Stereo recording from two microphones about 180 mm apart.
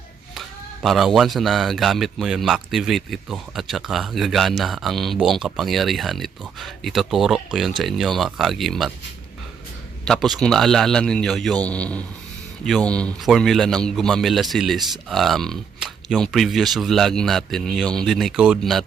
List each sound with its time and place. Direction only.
0.3 s speech: centre (ahead or behind)
10.1 s speech: centre (ahead or behind)